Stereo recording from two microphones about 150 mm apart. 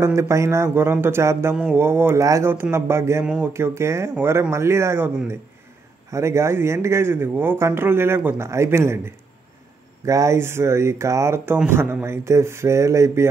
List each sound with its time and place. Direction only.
0.0 s speech: 20° right (ahead or behind)
6.1 s speech: 20° right (ahead or behind)